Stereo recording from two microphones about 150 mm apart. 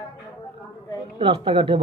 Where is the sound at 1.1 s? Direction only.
35° right (ahead or behind).